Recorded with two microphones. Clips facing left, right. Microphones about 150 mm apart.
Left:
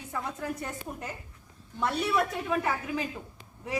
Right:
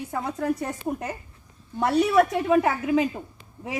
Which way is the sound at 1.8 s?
70° right (ahead or behind).